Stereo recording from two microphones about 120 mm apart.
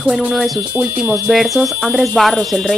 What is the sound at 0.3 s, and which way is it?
Speech, 5° right (ahead or behind).